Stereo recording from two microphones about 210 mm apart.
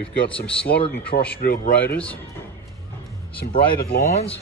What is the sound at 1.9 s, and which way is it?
Speech, 5° left (ahead or behind).